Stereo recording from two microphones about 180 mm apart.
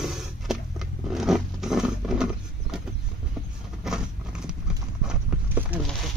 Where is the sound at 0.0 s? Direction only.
Centre (ahead or behind).